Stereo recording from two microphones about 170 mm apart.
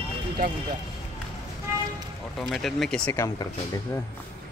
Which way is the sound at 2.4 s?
Centre (ahead or behind).